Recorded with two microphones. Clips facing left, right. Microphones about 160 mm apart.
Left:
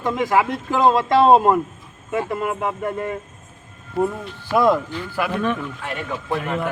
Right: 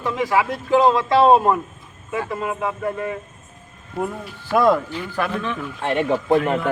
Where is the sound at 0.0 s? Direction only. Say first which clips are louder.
Left 1 dB; 45° left (ahead or behind).